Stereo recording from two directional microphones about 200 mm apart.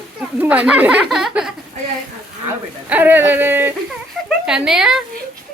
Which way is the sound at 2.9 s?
10° right (ahead or behind).